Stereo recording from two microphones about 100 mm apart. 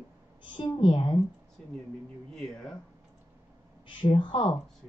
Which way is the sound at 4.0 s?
60° left (ahead or behind).